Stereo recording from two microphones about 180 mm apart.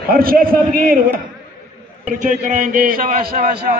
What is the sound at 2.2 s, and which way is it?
A man's voice, 45° right (ahead or behind).